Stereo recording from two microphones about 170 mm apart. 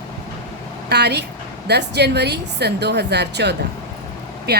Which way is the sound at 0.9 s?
75° right (ahead or behind).